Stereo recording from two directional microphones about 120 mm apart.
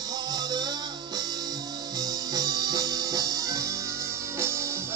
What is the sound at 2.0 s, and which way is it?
Music, 30° right (ahead or behind).